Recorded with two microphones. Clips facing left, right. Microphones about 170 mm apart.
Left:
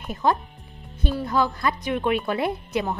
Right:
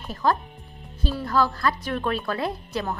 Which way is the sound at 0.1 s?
20° left (ahead or behind).